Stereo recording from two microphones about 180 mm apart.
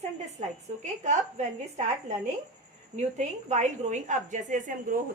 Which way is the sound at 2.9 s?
40° right (ahead or behind).